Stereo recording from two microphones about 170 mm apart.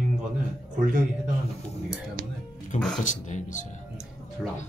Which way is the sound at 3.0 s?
45° left (ahead or behind).